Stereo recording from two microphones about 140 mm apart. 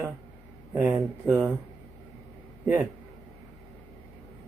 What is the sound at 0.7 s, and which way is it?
Speech, 10° right (ahead or behind).